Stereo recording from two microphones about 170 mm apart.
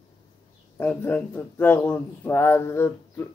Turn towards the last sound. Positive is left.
turn(degrees=15)  # may be behind; listen again after turning